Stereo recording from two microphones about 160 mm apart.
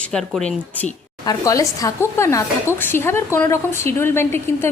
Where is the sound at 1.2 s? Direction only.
20° left (ahead or behind).